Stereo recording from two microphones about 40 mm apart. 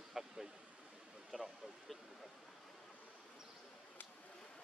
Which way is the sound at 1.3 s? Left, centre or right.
Right.